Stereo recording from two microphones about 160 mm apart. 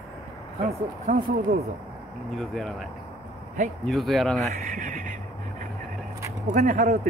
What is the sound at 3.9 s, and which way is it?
Speech, centre (ahead or behind).